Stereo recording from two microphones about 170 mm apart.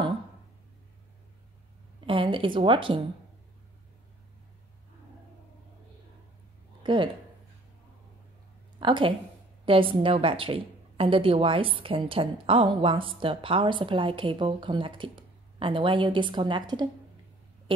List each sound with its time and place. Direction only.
2.0 s a woman's voice: 30° right (ahead or behind)
6.8 s a sound: 30° right (ahead or behind)
8.7 s a woman's voice: 30° right (ahead or behind)